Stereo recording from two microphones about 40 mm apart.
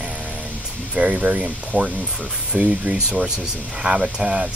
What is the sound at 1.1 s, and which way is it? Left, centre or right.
Speech, right.